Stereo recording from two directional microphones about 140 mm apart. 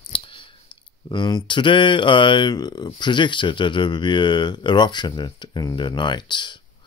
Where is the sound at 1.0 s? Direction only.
35° left (ahead or behind).